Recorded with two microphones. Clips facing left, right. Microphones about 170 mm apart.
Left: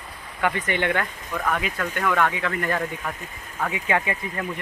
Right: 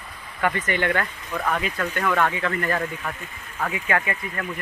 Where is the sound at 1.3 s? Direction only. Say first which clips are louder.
Even; 10° right (ahead or behind).